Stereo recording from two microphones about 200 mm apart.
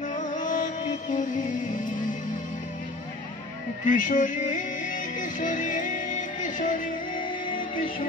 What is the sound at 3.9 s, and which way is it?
Music, 40° left (ahead or behind).